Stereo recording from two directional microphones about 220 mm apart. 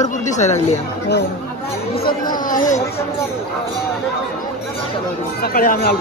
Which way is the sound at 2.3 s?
35° left (ahead or behind).